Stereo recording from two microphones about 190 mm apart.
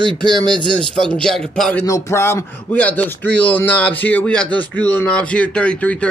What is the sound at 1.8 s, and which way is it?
Speech, 15° left (ahead or behind).